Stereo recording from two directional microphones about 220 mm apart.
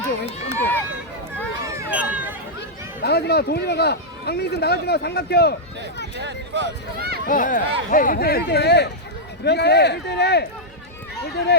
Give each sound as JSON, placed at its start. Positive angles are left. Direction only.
{"t": 0.6, "sound": "run", "side_deg": 10}
{"t": 1.6, "sound": "run", "side_deg": -15}
{"t": 2.6, "sound": "speech", "side_deg": 50}
{"t": 6.2, "sound": "speech", "side_deg": -50}
{"t": 7.3, "sound": "speech", "side_deg": 40}